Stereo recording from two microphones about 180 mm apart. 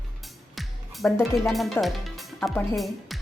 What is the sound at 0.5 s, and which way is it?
Music, centre (ahead or behind).